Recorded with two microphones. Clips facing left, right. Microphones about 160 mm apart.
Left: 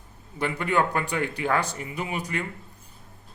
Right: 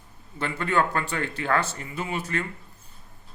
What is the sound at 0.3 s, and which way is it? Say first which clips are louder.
A man's voice: even; 15° left (ahead or behind).